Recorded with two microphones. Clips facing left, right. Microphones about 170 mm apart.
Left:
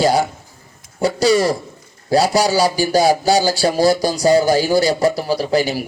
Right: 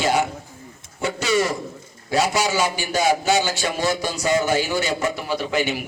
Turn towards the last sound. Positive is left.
turn(degrees=35)  # may be behind; listen again after turning